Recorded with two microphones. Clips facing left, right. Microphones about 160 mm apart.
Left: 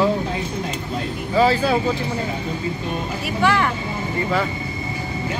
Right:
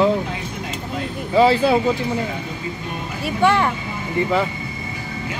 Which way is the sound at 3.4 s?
25° right (ahead or behind).